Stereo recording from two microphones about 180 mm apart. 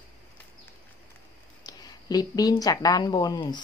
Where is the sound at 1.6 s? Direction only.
20° left (ahead or behind).